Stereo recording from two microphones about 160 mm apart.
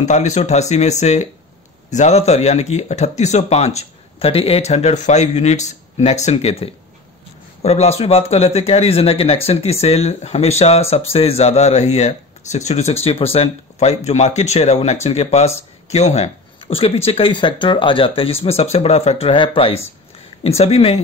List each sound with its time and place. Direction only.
0.0 s speech: 45° left (ahead or behind)